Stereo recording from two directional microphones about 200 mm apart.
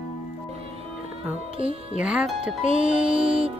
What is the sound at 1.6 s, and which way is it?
Music, 30° right (ahead or behind).